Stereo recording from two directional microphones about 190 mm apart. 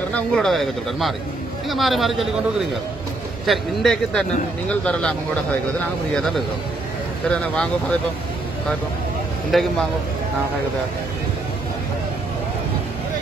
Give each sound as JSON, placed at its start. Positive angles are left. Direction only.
{"t": 0.1, "sound": "speech", "side_deg": 5}
{"t": 6.1, "sound": "speech", "side_deg": 5}
{"t": 9.5, "sound": "speech", "side_deg": 0}